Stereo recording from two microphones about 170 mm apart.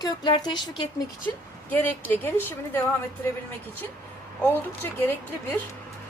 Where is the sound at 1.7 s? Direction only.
10° left (ahead or behind).